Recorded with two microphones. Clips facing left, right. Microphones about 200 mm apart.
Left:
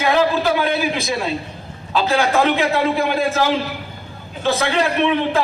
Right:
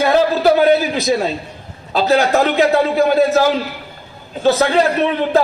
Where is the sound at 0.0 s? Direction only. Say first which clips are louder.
Right 4 dB; 40° right (ahead or behind).